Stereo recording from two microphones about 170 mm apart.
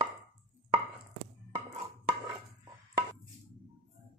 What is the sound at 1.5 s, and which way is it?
Chopping, 40° right (ahead or behind).